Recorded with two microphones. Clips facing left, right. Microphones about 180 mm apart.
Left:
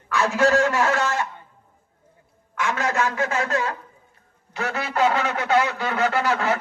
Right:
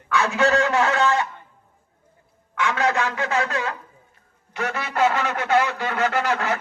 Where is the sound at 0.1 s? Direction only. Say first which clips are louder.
Left 1 dB; 60° right (ahead or behind).